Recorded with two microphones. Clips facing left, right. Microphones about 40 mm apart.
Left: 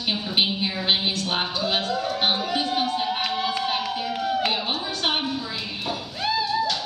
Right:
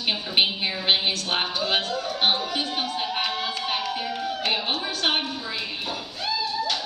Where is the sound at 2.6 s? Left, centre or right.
Centre.